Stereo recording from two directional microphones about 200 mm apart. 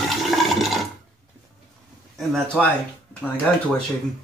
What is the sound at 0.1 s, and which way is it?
Toilet flush, centre (ahead or behind).